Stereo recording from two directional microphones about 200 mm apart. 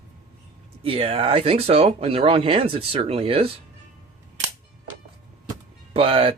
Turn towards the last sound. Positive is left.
turn(degrees=-25)  # may be behind; listen again after turning